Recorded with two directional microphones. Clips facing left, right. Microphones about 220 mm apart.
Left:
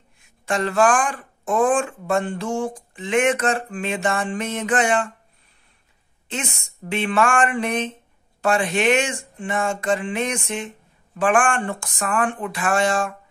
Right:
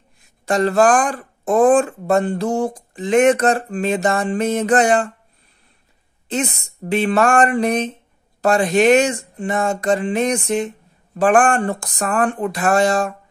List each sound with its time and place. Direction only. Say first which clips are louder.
0.5 s speech: right 4 dB; 40° right (ahead or behind)
6.2 s speech: right 8 dB; 40° right (ahead or behind)